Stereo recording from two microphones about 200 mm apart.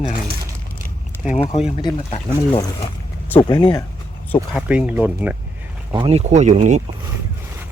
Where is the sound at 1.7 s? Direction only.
25° left (ahead or behind).